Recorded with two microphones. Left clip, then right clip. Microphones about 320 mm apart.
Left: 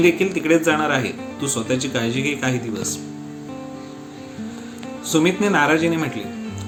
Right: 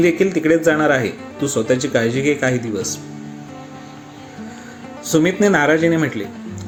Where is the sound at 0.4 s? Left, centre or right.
Centre.